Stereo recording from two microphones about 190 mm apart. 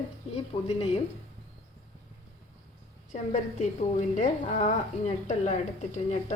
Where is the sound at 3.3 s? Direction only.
40° left (ahead or behind).